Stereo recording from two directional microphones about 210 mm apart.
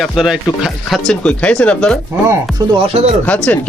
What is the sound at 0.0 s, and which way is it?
Speech, centre (ahead or behind).